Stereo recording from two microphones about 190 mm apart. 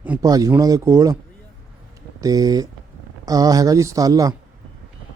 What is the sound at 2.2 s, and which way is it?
Speech, 20° right (ahead or behind).